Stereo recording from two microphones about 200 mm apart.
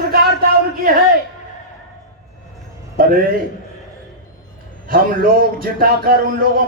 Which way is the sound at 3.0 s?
45° right (ahead or behind).